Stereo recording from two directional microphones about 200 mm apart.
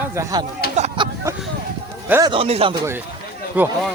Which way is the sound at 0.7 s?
35° right (ahead or behind).